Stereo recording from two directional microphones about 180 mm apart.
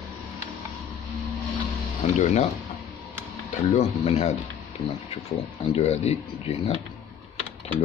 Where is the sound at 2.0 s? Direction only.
40° left (ahead or behind).